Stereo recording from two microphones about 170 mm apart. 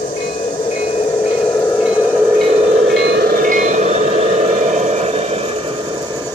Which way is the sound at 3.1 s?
65° right (ahead or behind).